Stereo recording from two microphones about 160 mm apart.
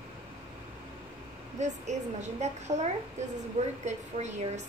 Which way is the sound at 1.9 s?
45° right (ahead or behind).